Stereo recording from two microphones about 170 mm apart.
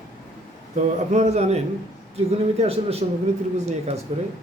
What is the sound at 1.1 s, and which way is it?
A man's voice, 40° right (ahead or behind).